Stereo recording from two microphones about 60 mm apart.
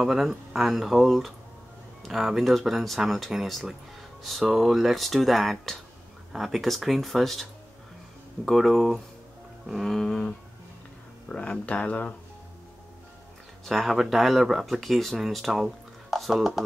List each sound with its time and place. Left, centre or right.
0.0 s speech: centre
8.5 s speech: centre
11.2 s speech: centre
13.7 s speech: centre